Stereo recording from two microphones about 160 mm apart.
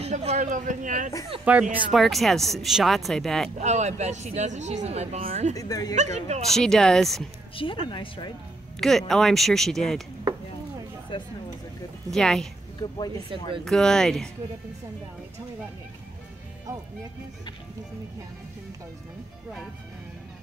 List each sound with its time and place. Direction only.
0.0 s speech: 40° right (ahead or behind)
1.4 s speech: 10° right (ahead or behind)
3.5 s speech: 45° right (ahead or behind)
5.6 s a woman's voice: 20° left (ahead or behind)
5.9 s speech: 45° right (ahead or behind)
6.5 s speech: 5° left (ahead or behind)
7.5 s speech: 30° left (ahead or behind)
8.7 s speech: 5° left (ahead or behind)
12.1 s speech: 5° left (ahead or behind)
12.8 s a woman's voice: 25° left (ahead or behind)
13.7 s speech: 5° left (ahead or behind)